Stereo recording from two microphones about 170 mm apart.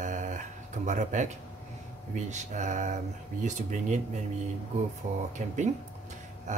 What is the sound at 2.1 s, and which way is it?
Speech, 45° right (ahead or behind).